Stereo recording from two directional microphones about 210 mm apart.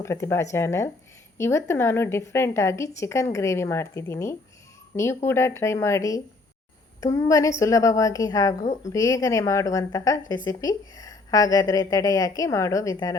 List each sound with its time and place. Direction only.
0.0 s a woman's voice: 15° left (ahead or behind)
8.6 s speech: 35° left (ahead or behind)
8.9 s a woman's voice: 15° left (ahead or behind)